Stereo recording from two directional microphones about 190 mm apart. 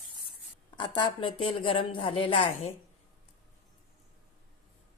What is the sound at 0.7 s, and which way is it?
A woman's voice, 25° left (ahead or behind).